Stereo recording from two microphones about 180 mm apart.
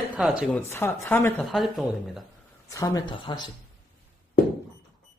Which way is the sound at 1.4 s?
Centre (ahead or behind).